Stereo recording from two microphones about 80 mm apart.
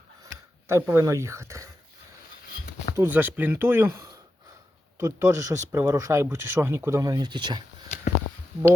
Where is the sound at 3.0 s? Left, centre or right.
Right.